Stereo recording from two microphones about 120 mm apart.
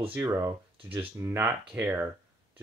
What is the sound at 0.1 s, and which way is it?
Speech, 20° right (ahead or behind).